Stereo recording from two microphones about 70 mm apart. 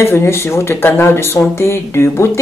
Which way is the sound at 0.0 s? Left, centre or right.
Left.